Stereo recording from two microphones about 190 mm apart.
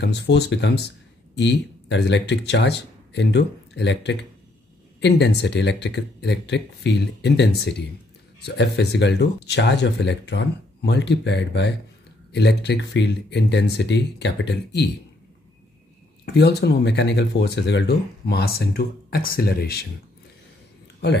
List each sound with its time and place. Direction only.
0.0 s speech: 65° left (ahead or behind)
16.3 s speech: 60° left (ahead or behind)